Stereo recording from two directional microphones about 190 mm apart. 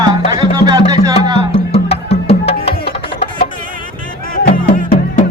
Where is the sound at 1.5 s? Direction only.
30° left (ahead or behind).